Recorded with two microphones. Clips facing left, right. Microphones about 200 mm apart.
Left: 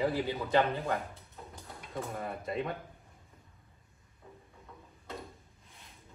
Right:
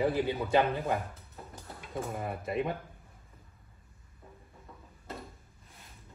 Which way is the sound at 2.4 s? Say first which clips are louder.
Right 4 dB; 5° right (ahead or behind).